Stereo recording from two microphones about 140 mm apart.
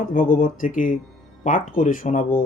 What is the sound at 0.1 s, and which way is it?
Speech, 75° left (ahead or behind).